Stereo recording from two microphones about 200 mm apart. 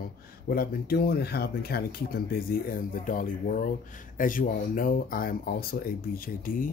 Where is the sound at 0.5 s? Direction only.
50° left (ahead or behind).